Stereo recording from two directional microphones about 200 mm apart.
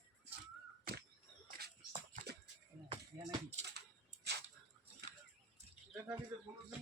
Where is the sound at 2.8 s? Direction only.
30° right (ahead or behind).